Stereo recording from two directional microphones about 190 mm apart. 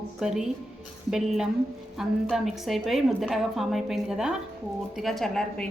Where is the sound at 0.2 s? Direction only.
Centre (ahead or behind).